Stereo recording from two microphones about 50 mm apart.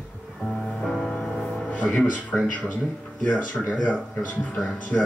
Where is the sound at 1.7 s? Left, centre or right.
Left.